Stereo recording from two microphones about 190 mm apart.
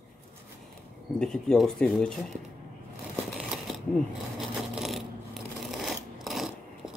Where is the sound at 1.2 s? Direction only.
5° left (ahead or behind).